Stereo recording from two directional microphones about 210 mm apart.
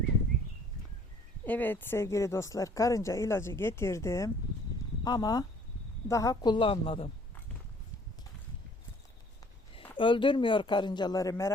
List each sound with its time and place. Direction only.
1.5 s speech: 10° left (ahead or behind); by 7.1 s 25° left (ahead or behind)
10.0 s speech: 25° left (ahead or behind)